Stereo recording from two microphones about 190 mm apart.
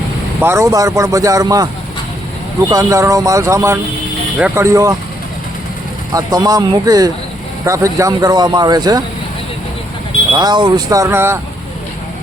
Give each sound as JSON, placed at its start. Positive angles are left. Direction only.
{"t": 0.3, "sound": "a man's voice", "side_deg": -15}
{"t": 2.6, "sound": "a man's voice", "side_deg": -15}
{"t": 6.1, "sound": "speech", "side_deg": -20}
{"t": 10.3, "sound": "speech", "side_deg": -25}